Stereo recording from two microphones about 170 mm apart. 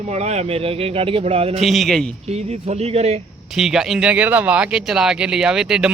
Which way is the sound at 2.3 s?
40° right (ahead or behind).